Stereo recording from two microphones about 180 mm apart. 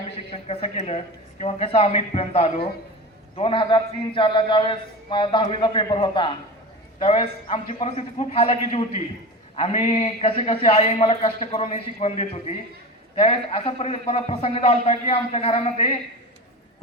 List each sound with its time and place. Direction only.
0.4 s a man's voice: 35° left (ahead or behind)